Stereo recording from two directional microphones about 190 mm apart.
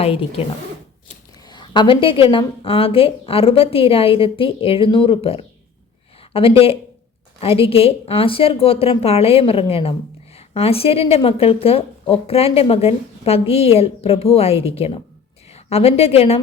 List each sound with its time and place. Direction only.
0.0 s a woman's voice: 30° left (ahead or behind)
1.5 s a woman's voice: 25° left (ahead or behind)